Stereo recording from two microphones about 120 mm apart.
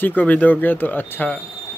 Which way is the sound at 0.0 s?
15° left (ahead or behind).